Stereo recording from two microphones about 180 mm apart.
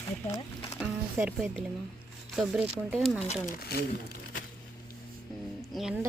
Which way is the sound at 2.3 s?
Centre (ahead or behind).